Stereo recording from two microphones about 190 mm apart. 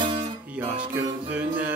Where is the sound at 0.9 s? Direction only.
10° right (ahead or behind).